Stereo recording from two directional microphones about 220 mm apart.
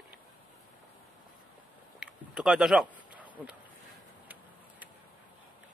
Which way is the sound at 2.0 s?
5° right (ahead or behind).